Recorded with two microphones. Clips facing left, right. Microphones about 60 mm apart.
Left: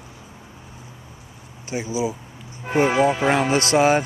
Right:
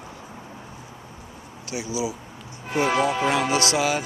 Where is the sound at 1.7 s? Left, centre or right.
Left.